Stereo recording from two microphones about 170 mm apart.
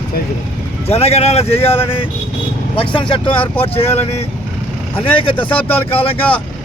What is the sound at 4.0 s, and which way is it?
Speech, 40° left (ahead or behind).